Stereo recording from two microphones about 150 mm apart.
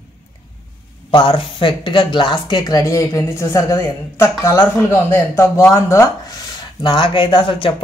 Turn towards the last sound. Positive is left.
turn(degrees=35)  # may be behind; listen again after turning